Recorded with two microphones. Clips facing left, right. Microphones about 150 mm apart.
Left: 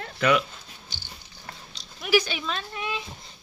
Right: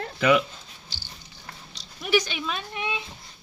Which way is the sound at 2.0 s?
5° left (ahead or behind).